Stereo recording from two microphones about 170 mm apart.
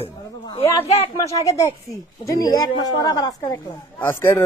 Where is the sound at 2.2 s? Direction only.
20° left (ahead or behind).